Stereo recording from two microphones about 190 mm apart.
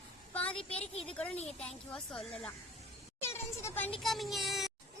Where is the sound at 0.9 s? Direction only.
30° left (ahead or behind).